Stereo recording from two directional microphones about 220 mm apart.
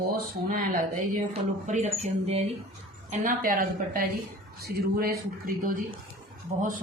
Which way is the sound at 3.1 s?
40° right (ahead or behind).